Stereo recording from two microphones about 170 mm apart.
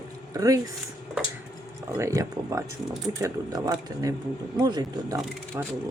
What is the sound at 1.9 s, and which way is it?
Speech, 20° right (ahead or behind).